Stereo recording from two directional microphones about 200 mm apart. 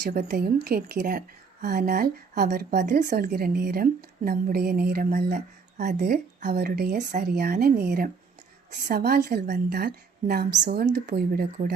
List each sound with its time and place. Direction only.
0.3 s speech: 50° right (ahead or behind)
6.9 s speech: 40° right (ahead or behind)